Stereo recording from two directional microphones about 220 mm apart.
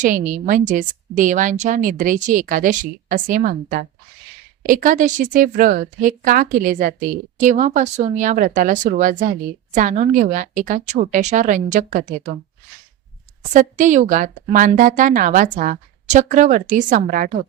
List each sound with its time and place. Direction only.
0.0 s a woman's voice: 35° right (ahead or behind)
13.5 s a woman's voice: 35° right (ahead or behind)